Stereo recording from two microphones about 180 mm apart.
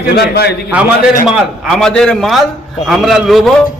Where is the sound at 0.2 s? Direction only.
65° left (ahead or behind).